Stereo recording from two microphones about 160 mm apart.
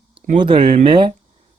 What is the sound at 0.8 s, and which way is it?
Speech, 30° right (ahead or behind).